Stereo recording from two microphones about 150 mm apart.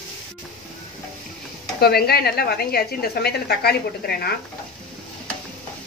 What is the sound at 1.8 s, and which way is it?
A woman's voice, 90° left.